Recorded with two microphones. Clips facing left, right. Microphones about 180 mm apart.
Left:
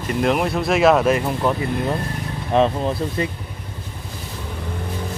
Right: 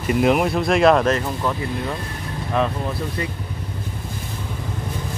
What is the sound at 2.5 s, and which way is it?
Speech, 25° left (ahead or behind).